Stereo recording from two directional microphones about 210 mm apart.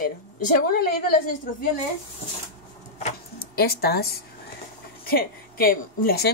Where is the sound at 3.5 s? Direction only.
45° left (ahead or behind).